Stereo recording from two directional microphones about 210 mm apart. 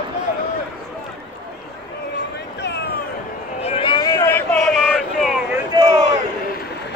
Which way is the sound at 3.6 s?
25° left (ahead or behind).